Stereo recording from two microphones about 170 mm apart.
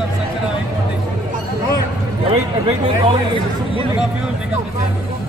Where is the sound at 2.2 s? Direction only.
30° right (ahead or behind).